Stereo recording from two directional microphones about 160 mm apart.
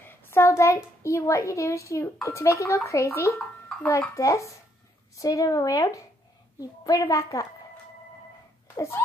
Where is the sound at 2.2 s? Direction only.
20° left (ahead or behind).